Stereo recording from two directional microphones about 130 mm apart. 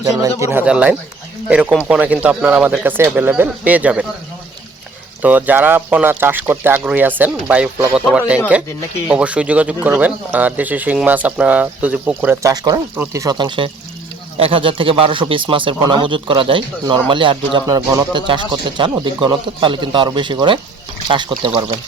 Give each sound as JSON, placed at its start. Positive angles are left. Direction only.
{"t": 0.0, "sound": "speech", "side_deg": -25}
{"t": 0.6, "sound": "speech", "side_deg": -10}
{"t": 5.2, "sound": "speech", "side_deg": -15}
{"t": 12.5, "sound": "speech", "side_deg": -25}
{"t": 13.3, "sound": "speech", "side_deg": -35}